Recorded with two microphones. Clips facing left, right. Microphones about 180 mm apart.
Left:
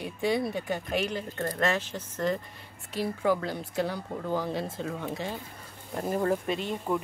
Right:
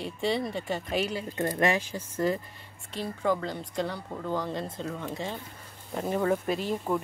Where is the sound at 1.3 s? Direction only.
15° right (ahead or behind).